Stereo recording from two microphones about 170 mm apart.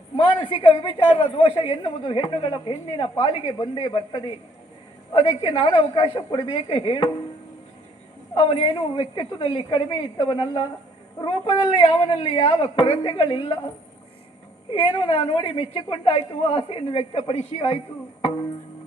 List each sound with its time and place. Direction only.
0.2 s a woman's voice: 30° left (ahead or behind)
8.4 s a woman's voice: 35° left (ahead or behind)
14.7 s a woman's voice: 30° left (ahead or behind)